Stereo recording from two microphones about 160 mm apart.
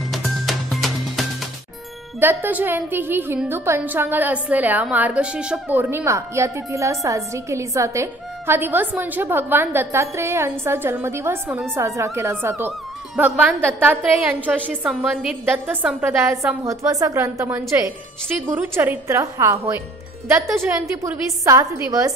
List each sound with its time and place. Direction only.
0.1 s music: centre (ahead or behind)
2.1 s a woman's voice: 10° right (ahead or behind)